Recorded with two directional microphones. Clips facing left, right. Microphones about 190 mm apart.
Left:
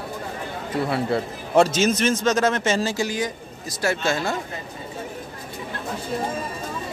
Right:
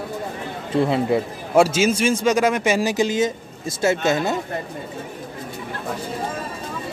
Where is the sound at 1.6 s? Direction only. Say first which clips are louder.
Right 1 dB; 10° right (ahead or behind).